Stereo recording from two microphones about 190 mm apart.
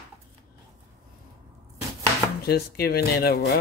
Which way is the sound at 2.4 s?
55° left (ahead or behind).